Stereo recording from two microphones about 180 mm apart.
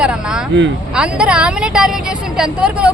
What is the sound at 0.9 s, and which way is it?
Speech, 5° right (ahead or behind).